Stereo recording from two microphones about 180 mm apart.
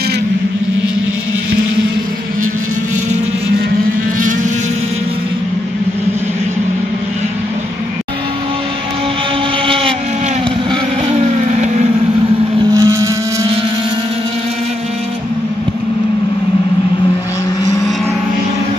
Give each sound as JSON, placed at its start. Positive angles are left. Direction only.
{"t": 10.7, "sound": "vehicle", "side_deg": -35}
{"t": 12.7, "sound": "vehicle", "side_deg": -20}